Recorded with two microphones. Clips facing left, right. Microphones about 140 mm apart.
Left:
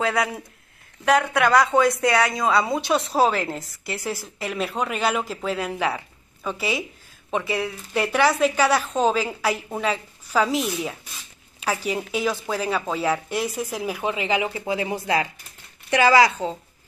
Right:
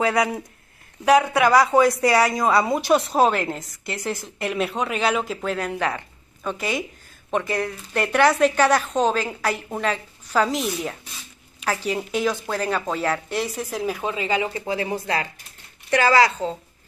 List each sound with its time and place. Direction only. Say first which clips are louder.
0.0 s a woman's voice: right 3 dB; centre (ahead or behind)